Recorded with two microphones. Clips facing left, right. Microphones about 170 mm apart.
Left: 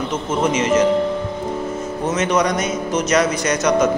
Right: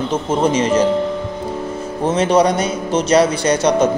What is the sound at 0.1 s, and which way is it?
Speech, 30° right (ahead or behind).